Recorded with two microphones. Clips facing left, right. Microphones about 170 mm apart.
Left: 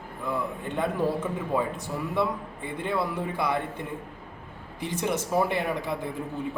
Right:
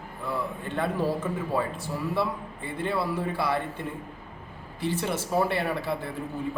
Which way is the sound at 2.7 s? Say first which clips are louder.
Right 1 dB; 15° left (ahead or behind).